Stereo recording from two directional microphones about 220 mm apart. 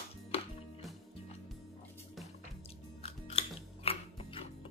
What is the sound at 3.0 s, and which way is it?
Music, 25° left (ahead or behind).